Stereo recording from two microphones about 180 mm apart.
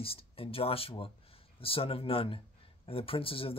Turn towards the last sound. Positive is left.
turn(degrees=30)  # may be behind; listen again after turning